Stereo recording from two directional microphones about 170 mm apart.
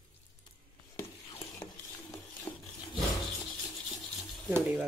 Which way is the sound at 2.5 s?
30° left (ahead or behind).